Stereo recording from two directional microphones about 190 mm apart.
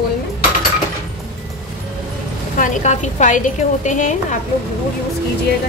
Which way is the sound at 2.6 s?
40° left (ahead or behind).